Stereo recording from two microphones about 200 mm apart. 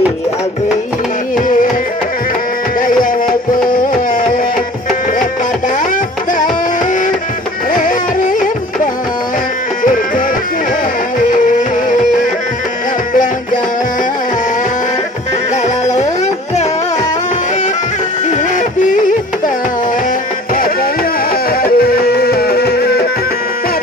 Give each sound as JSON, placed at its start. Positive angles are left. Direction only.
{"t": 2.8, "sound": "music", "side_deg": 45}
{"t": 7.7, "sound": "music", "side_deg": 40}
{"t": 15.5, "sound": "music", "side_deg": 35}
{"t": 21.5, "sound": "music", "side_deg": 50}